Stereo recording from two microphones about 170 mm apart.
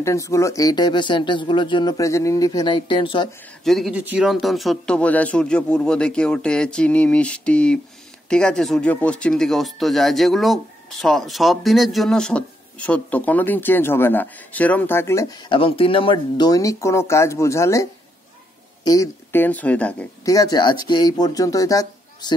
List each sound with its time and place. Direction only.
0.0 s speech: 15° left (ahead or behind)
3.6 s speech: centre (ahead or behind); by 17.8 s 15° left (ahead or behind)
18.9 s speech: 15° left (ahead or behind)
20.2 s speech: 20° left (ahead or behind)